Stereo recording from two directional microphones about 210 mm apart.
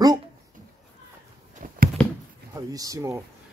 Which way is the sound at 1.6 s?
40° right (ahead or behind).